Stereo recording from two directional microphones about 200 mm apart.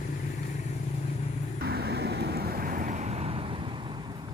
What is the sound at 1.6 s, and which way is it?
Vehicle, 55° right (ahead or behind).